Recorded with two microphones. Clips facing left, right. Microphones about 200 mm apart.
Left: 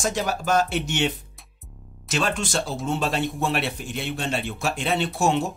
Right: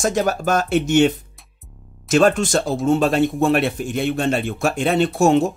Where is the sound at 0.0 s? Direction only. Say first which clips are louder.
Right 6 dB; 50° right (ahead or behind).